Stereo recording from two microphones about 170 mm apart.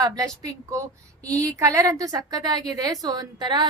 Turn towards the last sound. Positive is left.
turn(degrees=-25)  # may be behind; listen again after turning